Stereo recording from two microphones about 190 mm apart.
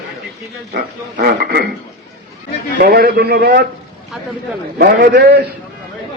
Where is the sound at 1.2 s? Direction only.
55° right (ahead or behind).